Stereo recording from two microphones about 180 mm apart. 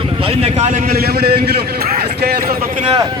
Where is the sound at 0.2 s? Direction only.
30° right (ahead or behind); by 2.8 s 50° right (ahead or behind).